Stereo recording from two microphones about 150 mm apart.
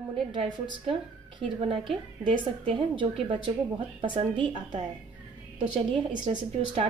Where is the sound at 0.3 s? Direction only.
30° right (ahead or behind).